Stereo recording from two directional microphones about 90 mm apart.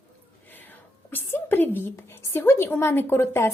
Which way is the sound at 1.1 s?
20° left (ahead or behind).